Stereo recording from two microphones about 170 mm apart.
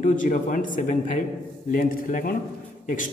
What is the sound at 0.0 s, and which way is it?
A man's voice, 50° left (ahead or behind).